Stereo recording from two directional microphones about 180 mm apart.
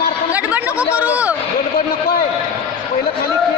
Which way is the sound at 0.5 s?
10° right (ahead or behind).